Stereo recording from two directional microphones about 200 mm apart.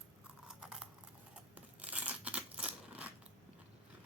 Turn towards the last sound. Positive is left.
turn(degrees=-5)  # may be behind; listen again after turning